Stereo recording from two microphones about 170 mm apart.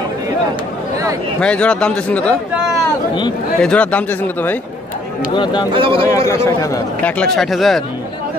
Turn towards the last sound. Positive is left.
turn(degrees=0)  # may be behind; listen again after turning